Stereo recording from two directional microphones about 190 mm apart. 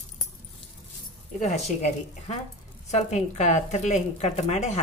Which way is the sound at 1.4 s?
35° left (ahead or behind).